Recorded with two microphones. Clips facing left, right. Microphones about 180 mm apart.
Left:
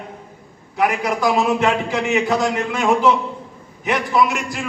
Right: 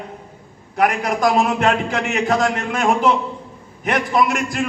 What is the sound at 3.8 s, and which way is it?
Speech, 50° right (ahead or behind).